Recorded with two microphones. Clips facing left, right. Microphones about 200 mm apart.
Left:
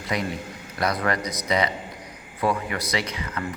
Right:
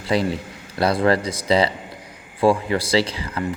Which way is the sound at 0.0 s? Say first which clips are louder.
Right 6 dB; 30° right (ahead or behind).